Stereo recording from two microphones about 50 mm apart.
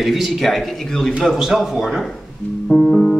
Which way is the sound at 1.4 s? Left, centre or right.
Centre.